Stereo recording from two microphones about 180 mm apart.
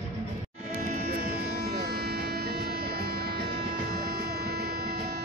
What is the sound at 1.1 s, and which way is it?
Music, 60° right (ahead or behind).